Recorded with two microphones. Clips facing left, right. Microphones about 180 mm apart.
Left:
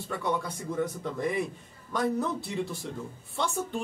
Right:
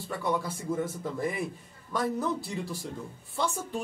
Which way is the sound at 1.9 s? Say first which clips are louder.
Left 1 dB; centre (ahead or behind).